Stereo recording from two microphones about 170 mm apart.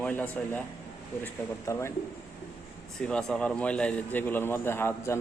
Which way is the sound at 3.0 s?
5° left (ahead or behind).